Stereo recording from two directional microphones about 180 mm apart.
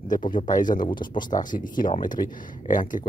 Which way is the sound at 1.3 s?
45° left (ahead or behind).